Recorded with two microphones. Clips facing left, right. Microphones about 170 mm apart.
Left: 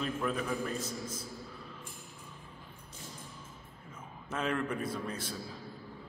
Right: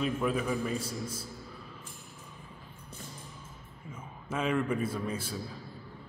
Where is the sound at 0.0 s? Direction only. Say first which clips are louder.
Right 4 dB; 5° right (ahead or behind).